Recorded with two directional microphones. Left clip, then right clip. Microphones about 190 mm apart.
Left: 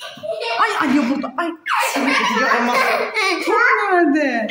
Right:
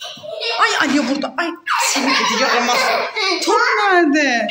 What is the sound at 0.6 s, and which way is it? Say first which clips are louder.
Speech: right 2 dB; 5° left (ahead or behind).